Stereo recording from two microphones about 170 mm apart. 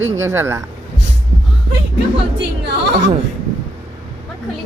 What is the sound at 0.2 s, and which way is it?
Speech, 15° right (ahead or behind).